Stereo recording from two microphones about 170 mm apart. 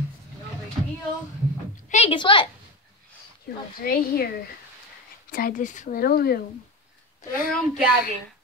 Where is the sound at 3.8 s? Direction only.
60° left (ahead or behind).